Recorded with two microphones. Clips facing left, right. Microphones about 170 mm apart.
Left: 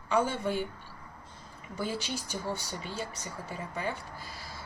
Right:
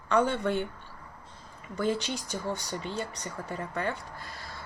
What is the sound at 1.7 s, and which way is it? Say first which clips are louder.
Speech: right 5 dB; 10° left (ahead or behind).